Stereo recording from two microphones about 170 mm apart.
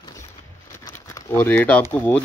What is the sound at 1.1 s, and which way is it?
Speech, 10° left (ahead or behind).